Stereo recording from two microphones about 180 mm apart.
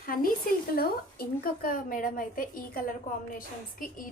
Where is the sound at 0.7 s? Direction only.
55° left (ahead or behind).